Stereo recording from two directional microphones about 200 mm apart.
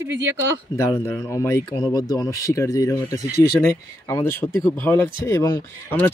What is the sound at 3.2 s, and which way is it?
Speech, 50° left (ahead or behind).